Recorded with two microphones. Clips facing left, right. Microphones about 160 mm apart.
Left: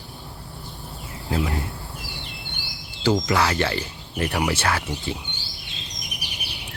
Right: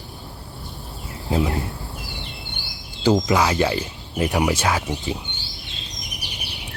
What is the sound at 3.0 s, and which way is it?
Speech, 15° right (ahead or behind).